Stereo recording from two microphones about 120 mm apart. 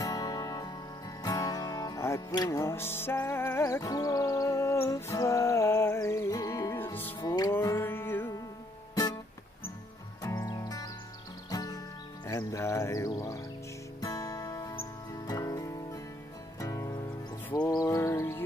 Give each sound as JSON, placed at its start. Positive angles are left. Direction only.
{"t": 0.0, "sound": "music", "side_deg": 30}
{"t": 6.8, "sound": "music", "side_deg": 15}
{"t": 7.2, "sound": "music", "side_deg": 35}
{"t": 7.5, "sound": "music", "side_deg": 20}
{"t": 10.2, "sound": "music", "side_deg": 25}
{"t": 12.3, "sound": "speech", "side_deg": 25}
{"t": 14.0, "sound": "music", "side_deg": 30}